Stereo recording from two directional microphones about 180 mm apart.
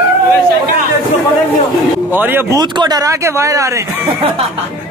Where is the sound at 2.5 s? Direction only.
25° right (ahead or behind).